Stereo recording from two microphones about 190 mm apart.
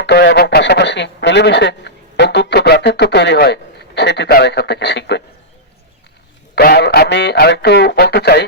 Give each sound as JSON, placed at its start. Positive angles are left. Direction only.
{"t": 0.0, "sound": "a man's voice", "side_deg": 65}
{"t": 6.6, "sound": "speech", "side_deg": 55}